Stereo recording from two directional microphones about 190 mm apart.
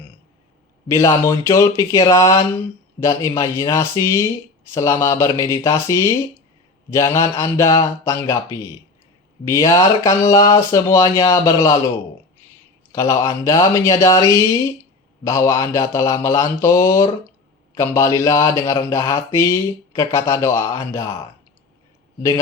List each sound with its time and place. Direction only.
0.9 s speech: 15° left (ahead or behind)
9.4 s speech: 15° left (ahead or behind)
12.9 s speech: 15° left (ahead or behind)